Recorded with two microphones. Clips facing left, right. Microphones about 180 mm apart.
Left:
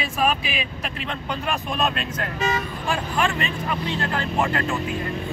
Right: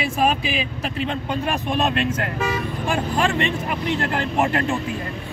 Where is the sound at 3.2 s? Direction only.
30° right (ahead or behind).